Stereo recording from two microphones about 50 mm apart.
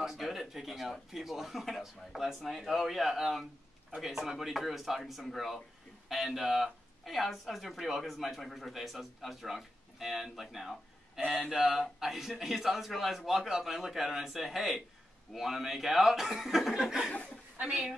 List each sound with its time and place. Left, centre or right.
0.0 s speech: centre
11.4 s a sound: centre
11.7 s speech: centre